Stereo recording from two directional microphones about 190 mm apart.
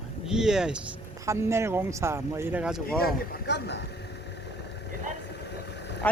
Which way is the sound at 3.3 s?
60° left (ahead or behind).